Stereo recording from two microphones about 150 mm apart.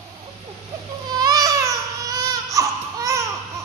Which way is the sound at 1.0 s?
25° right (ahead or behind).